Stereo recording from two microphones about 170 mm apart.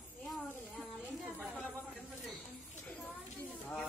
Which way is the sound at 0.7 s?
Centre (ahead or behind).